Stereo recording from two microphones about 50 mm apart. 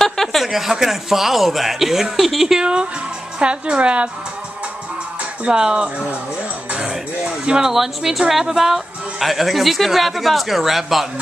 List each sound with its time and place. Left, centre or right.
0.0 s a sound: centre
0.5 s speech: centre
2.6 s a woman's voice: centre
5.4 s speech: centre
6.9 s a sound: centre
7.7 s speech: centre